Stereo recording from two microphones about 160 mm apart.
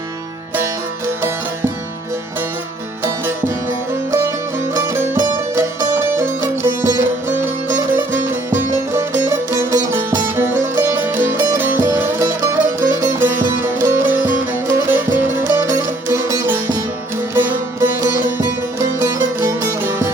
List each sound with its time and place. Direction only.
3.0 s music: 15° right (ahead or behind)